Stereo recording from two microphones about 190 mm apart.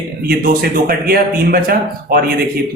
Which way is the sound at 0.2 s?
55° right (ahead or behind).